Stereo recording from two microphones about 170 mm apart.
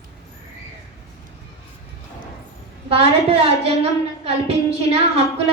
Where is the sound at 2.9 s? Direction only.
35° right (ahead or behind).